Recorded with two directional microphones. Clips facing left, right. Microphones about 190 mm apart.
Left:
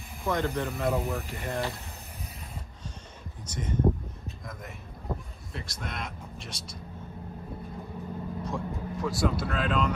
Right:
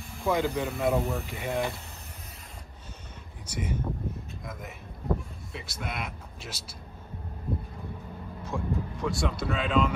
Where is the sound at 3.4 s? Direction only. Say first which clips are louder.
Left 2 dB; 10° right (ahead or behind).